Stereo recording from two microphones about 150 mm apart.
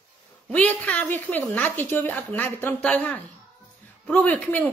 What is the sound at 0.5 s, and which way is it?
A woman's voice, 10° left (ahead or behind).